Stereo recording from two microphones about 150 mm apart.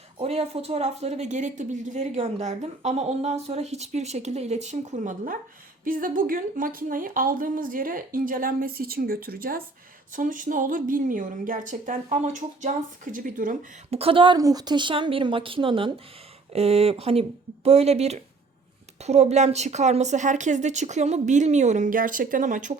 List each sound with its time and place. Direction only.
0.2 s speech: 45° right (ahead or behind); by 9.6 s 75° right (ahead or behind)
10.2 s a woman's voice: 60° right (ahead or behind)
13.9 s a woman's voice: 40° right (ahead or behind); by 22.8 s 55° right (ahead or behind)